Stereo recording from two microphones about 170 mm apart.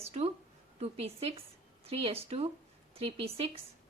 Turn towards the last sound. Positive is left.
turn(degrees=-35)  # may be behind; listen again after turning